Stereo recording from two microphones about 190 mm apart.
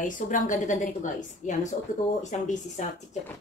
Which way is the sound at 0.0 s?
40° left (ahead or behind).